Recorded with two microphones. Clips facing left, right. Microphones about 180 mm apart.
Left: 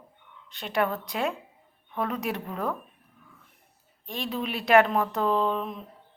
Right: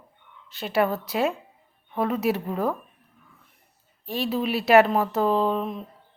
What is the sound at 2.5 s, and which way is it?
Speech, 30° right (ahead or behind).